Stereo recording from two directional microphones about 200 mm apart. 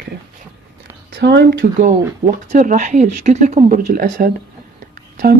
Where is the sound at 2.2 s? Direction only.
35° right (ahead or behind).